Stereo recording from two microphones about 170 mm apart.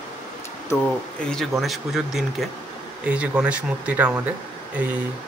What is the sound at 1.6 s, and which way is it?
Speech, centre (ahead or behind).